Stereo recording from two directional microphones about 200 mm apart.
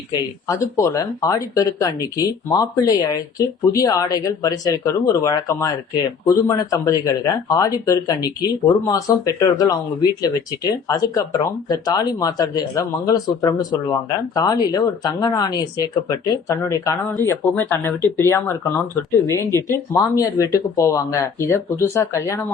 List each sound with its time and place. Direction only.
0.4 s speech: 15° left (ahead or behind)